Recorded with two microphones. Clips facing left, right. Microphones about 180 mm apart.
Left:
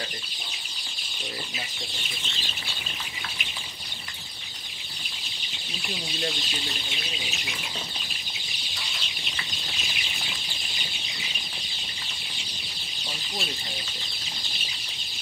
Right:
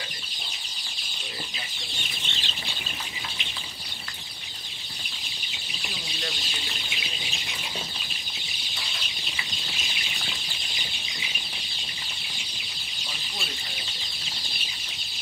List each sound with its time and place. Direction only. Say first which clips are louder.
2.3 s bird flight: right 1 dB; 35° left (ahead or behind)